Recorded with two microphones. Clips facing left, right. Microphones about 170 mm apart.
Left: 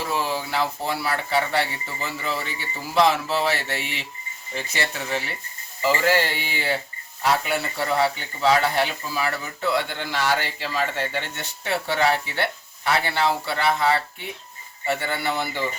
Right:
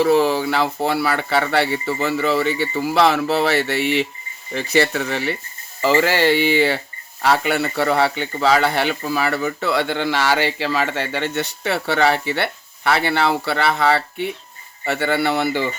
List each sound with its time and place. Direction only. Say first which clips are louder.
0.0 s speech: right 11 dB; 70° right (ahead or behind)
5.8 s speech: right 5 dB; 90° right